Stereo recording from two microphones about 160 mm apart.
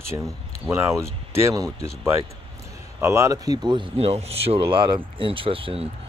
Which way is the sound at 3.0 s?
15° right (ahead or behind).